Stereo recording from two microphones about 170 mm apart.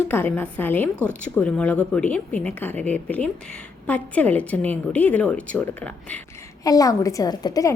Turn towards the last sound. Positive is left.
turn(degrees=20)  # may be behind; listen again after turning